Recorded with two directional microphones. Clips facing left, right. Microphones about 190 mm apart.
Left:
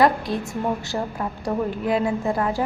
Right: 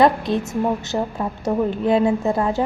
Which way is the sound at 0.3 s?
20° right (ahead or behind).